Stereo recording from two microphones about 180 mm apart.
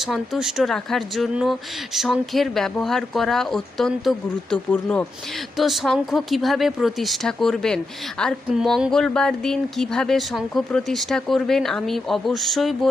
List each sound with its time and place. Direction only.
0.1 s speech: centre (ahead or behind)